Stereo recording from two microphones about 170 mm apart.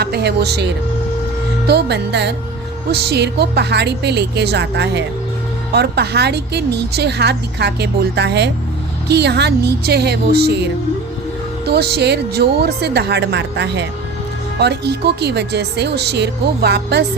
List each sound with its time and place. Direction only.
0.0 s a woman's voice: 70° right (ahead or behind); by 5.0 s 90° right
5.7 s a woman's voice: 75° right (ahead or behind)
14.6 s a woman's voice: 75° right (ahead or behind)